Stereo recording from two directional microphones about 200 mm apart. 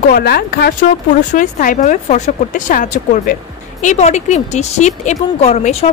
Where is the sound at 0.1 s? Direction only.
50° left (ahead or behind).